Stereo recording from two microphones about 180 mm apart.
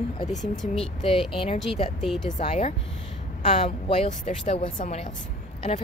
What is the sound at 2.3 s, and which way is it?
A woman's voice, 40° left (ahead or behind).